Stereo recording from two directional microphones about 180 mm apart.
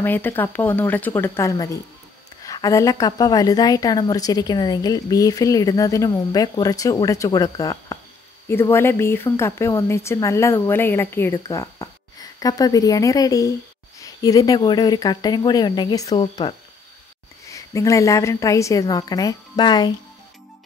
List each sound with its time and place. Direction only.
0.0 s a woman's voice: 10° left (ahead or behind)